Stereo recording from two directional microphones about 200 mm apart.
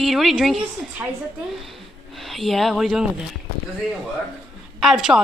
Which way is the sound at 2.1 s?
Centre (ahead or behind).